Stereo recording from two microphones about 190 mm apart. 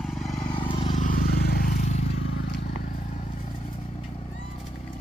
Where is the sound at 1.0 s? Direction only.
50° left (ahead or behind).